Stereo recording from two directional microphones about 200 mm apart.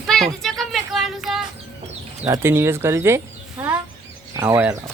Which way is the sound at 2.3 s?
10° right (ahead or behind).